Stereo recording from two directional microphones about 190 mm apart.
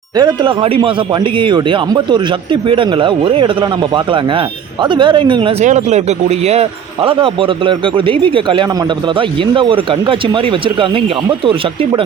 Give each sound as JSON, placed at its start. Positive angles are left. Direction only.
{"t": 0.2, "sound": "a man's voice", "side_deg": -25}